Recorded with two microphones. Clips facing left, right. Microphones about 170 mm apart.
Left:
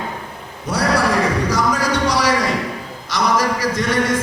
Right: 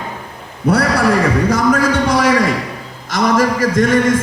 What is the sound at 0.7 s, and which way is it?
A man's voice, 55° right (ahead or behind).